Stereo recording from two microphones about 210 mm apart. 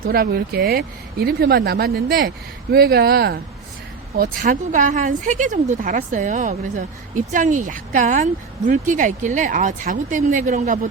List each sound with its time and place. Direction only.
0.1 s speech: 45° right (ahead or behind)